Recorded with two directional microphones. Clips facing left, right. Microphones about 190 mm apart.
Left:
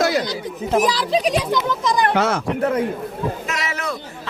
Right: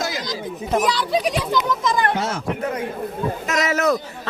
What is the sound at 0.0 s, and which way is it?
Chatter, 65° left (ahead or behind).